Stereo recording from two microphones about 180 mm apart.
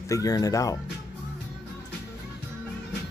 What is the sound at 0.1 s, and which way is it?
Speech, 20° left (ahead or behind).